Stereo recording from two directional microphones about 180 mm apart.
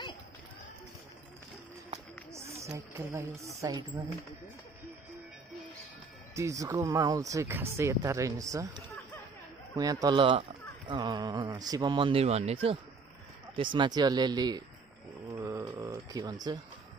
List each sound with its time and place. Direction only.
2.7 s speech: 15° right (ahead or behind)
6.3 s speech: 15° right (ahead or behind)
15.3 s a sound: 15° right (ahead or behind)